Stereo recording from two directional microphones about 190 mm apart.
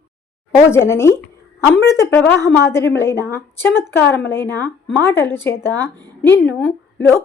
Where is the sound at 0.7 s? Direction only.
15° left (ahead or behind).